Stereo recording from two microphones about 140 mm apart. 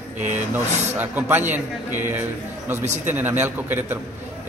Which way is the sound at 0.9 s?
15° right (ahead or behind).